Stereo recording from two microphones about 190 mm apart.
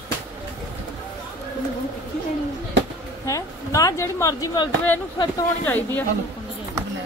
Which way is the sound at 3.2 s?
15° left (ahead or behind).